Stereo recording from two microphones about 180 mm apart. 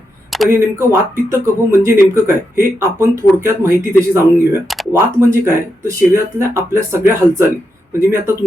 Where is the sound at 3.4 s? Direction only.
15° right (ahead or behind).